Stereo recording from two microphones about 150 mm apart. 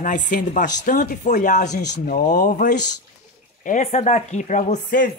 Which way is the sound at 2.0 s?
70° left (ahead or behind).